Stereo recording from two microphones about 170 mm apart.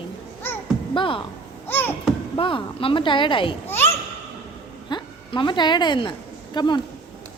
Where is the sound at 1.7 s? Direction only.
15° left (ahead or behind).